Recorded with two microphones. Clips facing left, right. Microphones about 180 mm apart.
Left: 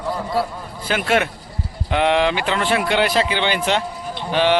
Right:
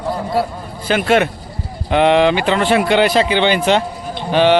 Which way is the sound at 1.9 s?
75° right (ahead or behind).